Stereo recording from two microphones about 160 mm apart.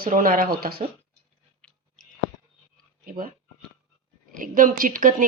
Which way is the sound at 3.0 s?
60° right (ahead or behind).